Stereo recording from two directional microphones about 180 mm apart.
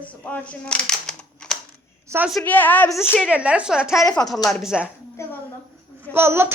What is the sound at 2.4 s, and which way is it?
Speech, 10° left (ahead or behind).